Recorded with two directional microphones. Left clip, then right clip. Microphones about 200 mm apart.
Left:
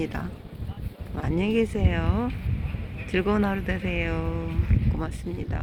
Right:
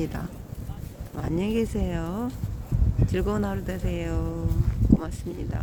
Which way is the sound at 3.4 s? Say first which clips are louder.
Left 3 dB; 5° right (ahead or behind).